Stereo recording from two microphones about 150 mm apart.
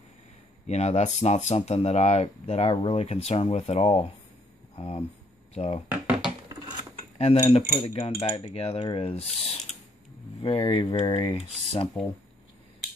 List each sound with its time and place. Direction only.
0.7 s speech: 50° left (ahead or behind)
5.9 s a sound: 5° right (ahead or behind)
7.2 s cutlery: 40° left (ahead or behind)
10.4 s cutlery: 35° left (ahead or behind)